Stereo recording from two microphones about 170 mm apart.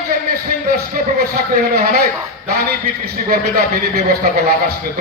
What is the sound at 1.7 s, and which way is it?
A man's voice, 65° right (ahead or behind).